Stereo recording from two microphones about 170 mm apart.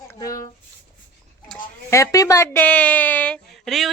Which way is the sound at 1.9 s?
20° left (ahead or behind).